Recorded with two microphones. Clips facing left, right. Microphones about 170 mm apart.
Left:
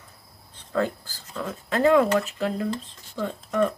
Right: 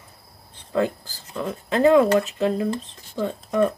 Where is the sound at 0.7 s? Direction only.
15° right (ahead or behind).